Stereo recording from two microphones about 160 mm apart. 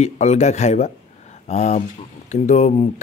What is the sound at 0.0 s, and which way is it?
Speech, 45° left (ahead or behind).